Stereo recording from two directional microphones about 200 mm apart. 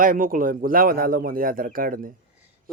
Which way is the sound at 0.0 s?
45° right (ahead or behind).